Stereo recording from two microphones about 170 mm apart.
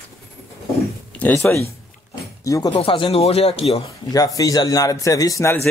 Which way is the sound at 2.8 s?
35° left (ahead or behind).